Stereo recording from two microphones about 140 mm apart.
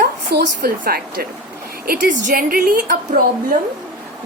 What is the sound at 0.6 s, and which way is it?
Speech, 90° right.